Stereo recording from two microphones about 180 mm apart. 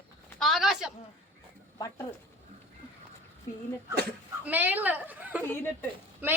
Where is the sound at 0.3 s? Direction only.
Centre (ahead or behind).